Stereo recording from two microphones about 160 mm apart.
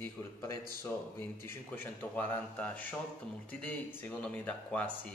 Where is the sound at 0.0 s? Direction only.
20° left (ahead or behind).